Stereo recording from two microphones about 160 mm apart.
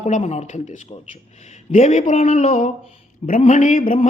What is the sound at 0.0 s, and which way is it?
A man's voice, 45° left (ahead or behind).